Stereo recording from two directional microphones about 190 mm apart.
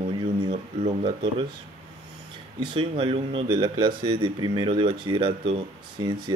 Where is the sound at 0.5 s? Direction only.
35° right (ahead or behind).